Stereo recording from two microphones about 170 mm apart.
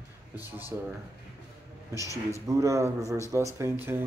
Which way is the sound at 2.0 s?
20° left (ahead or behind).